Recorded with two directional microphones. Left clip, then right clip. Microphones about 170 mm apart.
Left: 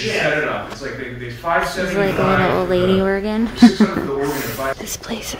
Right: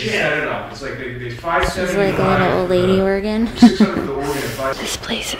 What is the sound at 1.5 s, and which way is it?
Speech, 90° left.